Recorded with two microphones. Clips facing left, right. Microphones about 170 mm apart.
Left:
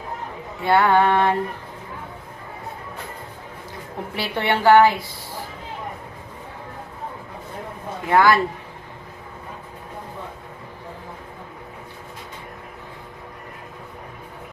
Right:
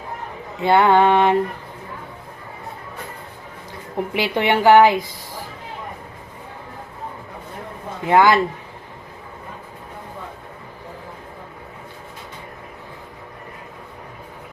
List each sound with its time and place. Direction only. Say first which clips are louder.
0.6 s music: right 3 dB; 20° right (ahead or behind)
4.1 s a woman's voice: right 3 dB; 15° right (ahead or behind)
8.1 s music: right 2 dB; 20° right (ahead or behind)